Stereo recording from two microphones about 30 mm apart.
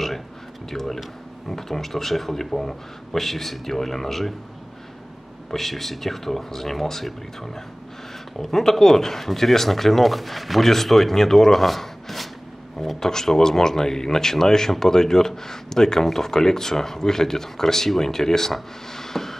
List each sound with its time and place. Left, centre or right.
0.7 s speech: centre
5.5 s speech: centre
13.0 s speech: centre
18.9 s a sound: centre